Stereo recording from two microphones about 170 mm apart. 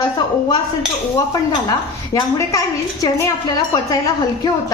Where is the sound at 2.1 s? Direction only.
20° left (ahead or behind).